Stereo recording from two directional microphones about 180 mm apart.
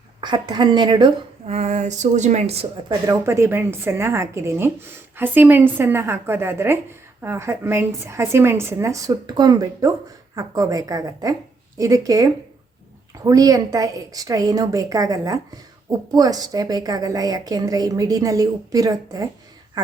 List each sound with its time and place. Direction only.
0.2 s a woman's voice: 25° right (ahead or behind)
1.5 s speech: 40° right (ahead or behind)
3.1 s a woman's voice: 15° right (ahead or behind)